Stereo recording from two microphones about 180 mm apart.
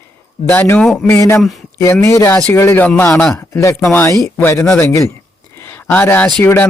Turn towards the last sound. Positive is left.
turn(degrees=10)  # may be behind; listen again after turning